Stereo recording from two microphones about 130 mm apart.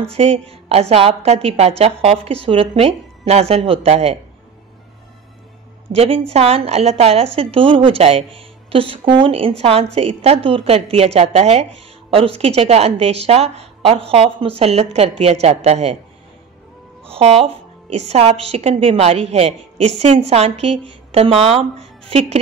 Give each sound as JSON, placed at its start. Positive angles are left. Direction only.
{"t": 0.1, "sound": "a woman's voice", "side_deg": -50}
{"t": 5.9, "sound": "a woman's voice", "side_deg": -50}
{"t": 17.1, "sound": "a woman's voice", "side_deg": -50}